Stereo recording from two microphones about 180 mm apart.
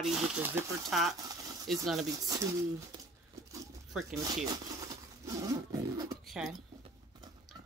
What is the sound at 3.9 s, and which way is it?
Speech, centre (ahead or behind).